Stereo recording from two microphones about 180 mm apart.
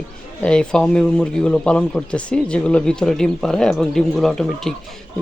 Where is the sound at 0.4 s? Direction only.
5° left (ahead or behind).